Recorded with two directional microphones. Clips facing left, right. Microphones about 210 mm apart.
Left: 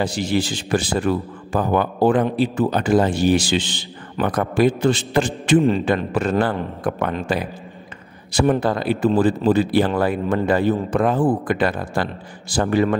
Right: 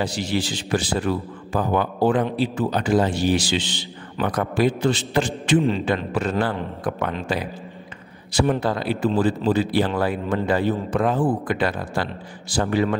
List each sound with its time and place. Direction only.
0.0 s a man's voice: 50° left (ahead or behind)